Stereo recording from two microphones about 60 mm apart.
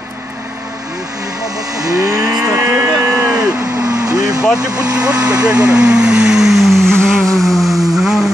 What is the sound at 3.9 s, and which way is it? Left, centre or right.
Vehicle, right.